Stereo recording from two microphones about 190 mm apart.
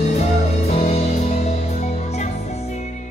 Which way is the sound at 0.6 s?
35° left (ahead or behind).